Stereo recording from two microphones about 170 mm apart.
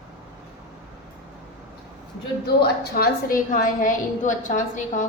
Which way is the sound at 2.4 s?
65° left (ahead or behind).